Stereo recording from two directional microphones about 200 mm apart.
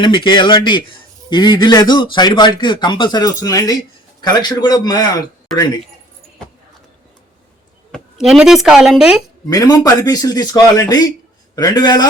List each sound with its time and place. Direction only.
0.0 s a man's voice: 25° left (ahead or behind)
7.9 s speech: centre (ahead or behind)
9.5 s a man's voice: 20° left (ahead or behind)